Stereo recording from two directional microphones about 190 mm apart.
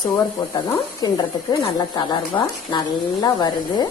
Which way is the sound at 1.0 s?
20° left (ahead or behind).